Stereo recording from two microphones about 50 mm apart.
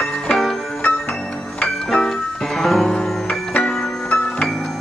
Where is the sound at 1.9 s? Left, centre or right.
Centre.